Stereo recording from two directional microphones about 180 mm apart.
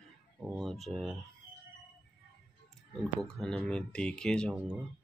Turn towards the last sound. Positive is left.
turn(degrees=0)  # may be behind; listen again after turning